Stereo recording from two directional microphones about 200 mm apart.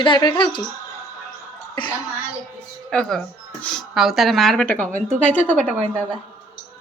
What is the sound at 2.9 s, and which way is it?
Speech, 5° left (ahead or behind).